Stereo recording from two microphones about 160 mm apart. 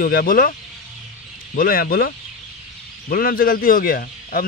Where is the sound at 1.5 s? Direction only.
65° left (ahead or behind).